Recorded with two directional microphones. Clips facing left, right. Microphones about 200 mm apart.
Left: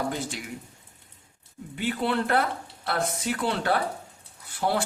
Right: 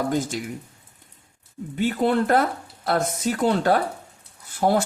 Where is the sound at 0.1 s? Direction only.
45° right (ahead or behind).